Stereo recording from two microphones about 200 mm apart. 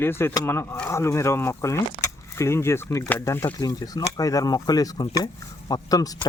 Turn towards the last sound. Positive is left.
turn(degrees=20)  # may be behind; listen again after turning